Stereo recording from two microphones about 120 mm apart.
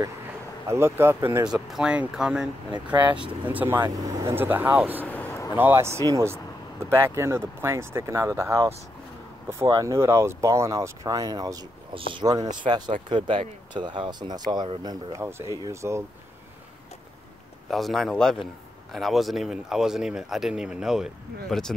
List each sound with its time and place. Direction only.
0.7 s speech: 20° right (ahead or behind)
1.5 s a man's voice: 5° right (ahead or behind)
5.0 s a sound: 15° left (ahead or behind)
5.6 s speech: 20° right (ahead or behind)
11.9 s speech: 45° right (ahead or behind)
12.3 s speech: 35° right (ahead or behind)
15.2 s speech: 20° right (ahead or behind)
17.6 s a man's voice: centre (ahead or behind)